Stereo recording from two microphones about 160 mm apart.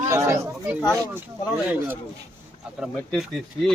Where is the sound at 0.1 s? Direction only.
15° right (ahead or behind).